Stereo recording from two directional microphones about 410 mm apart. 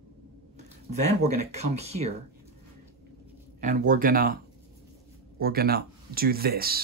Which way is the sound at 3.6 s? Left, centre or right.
Centre.